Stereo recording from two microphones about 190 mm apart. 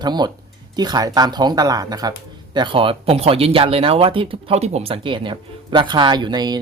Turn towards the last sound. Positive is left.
turn(degrees=-20)  # may be behind; listen again after turning